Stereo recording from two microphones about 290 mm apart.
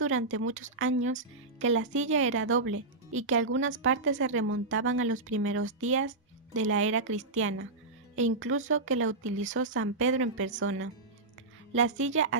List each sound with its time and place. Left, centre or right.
0.0 s speech: right